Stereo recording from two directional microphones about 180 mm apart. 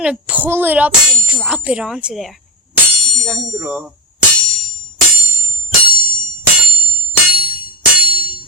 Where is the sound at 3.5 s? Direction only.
15° right (ahead or behind).